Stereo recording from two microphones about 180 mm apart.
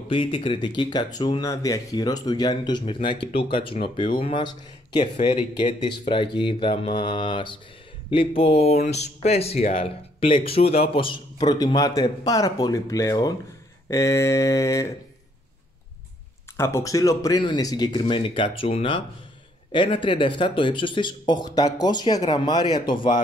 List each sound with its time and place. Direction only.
0.3 s speech: 30° left (ahead or behind)
13.8 s a sound: 15° left (ahead or behind)
16.5 s speech: 15° left (ahead or behind)